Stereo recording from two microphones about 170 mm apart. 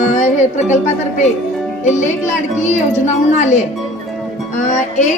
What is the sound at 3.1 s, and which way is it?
A child's voice, 45° left (ahead or behind).